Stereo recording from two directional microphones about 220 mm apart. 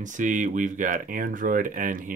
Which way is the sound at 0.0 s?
35° right (ahead or behind).